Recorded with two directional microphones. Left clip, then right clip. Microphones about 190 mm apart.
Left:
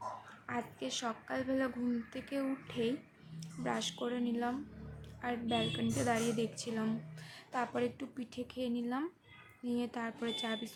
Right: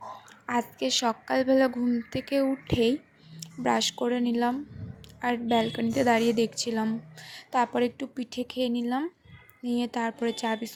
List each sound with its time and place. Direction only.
0.4 s a woman's voice: 35° right (ahead or behind)